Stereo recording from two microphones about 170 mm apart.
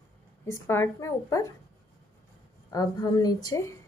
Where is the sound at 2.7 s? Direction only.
25° left (ahead or behind).